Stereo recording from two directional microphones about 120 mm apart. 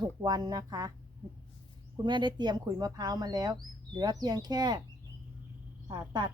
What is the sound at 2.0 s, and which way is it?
Speech, 40° right (ahead or behind).